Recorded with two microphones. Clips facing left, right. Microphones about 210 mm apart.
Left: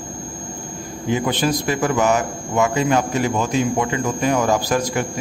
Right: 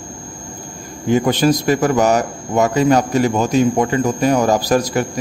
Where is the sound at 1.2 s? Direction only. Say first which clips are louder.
Right 5 dB; 40° right (ahead or behind).